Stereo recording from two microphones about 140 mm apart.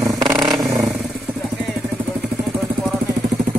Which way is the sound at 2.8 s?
Centre (ahead or behind).